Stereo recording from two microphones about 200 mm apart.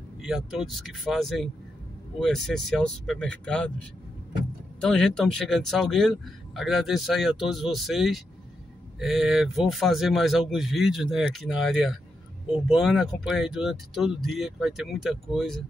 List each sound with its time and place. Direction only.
0.2 s speech: centre (ahead or behind)
4.7 s speech: 5° left (ahead or behind)